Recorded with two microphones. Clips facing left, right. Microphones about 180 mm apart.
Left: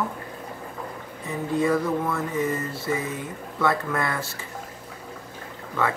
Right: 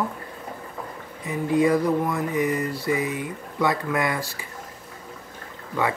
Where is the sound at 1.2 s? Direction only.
15° right (ahead or behind).